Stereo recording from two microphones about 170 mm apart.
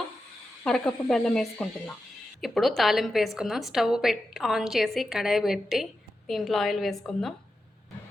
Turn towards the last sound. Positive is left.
turn(degrees=0)  # may be behind; listen again after turning